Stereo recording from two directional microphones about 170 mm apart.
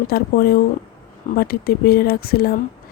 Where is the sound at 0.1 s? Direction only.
65° left (ahead or behind).